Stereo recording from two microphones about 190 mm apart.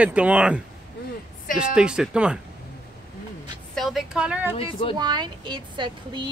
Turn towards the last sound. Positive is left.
turn(degrees=-25)  # may be behind; listen again after turning